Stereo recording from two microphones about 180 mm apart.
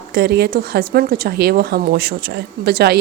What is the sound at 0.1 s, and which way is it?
A woman's voice, 65° right (ahead or behind).